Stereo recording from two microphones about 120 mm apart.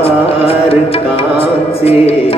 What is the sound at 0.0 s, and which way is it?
Music, 55° left (ahead or behind).